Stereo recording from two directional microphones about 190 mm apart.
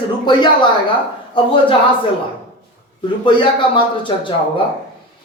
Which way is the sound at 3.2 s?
25° left (ahead or behind).